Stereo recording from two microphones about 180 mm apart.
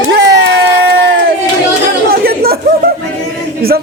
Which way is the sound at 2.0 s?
60° right (ahead or behind).